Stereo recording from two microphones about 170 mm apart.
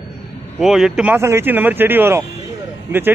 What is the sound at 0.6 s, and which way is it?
A man's voice, centre (ahead or behind).